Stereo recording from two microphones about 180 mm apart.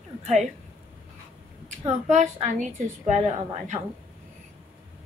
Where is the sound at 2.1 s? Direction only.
40° right (ahead or behind).